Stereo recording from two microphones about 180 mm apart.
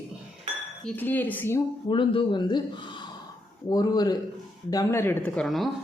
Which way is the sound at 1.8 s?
30° left (ahead or behind).